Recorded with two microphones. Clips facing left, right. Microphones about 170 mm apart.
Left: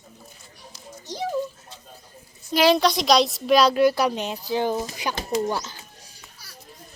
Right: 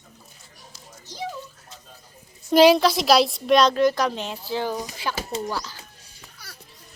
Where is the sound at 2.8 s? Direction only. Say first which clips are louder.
Right 1 dB; 5° right (ahead or behind); by 5.7 s 20° left (ahead or behind).